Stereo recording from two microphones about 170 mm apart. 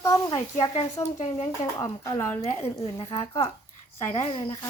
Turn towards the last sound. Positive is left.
turn(degrees=25)  # may be behind; listen again after turning